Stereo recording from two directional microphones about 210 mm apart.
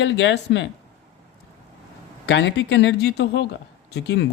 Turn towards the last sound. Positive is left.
turn(degrees=55)  # may be behind; listen again after turning